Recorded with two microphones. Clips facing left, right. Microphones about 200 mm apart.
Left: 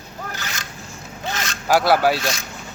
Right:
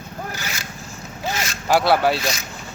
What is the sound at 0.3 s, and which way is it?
Boat, 10° right (ahead or behind).